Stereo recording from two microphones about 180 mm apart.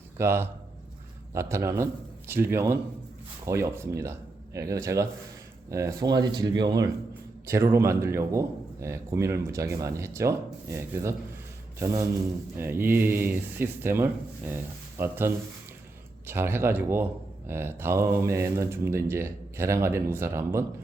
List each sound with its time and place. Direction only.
0.2 s speech: 15° right (ahead or behind)